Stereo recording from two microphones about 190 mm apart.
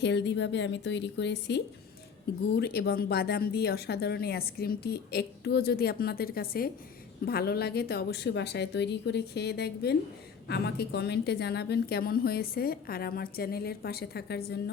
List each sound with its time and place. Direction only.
0.0 s a woman's voice: 65° left (ahead or behind)